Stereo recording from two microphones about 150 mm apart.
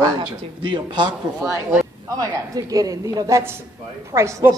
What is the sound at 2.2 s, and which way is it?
A woman's voice, 25° right (ahead or behind).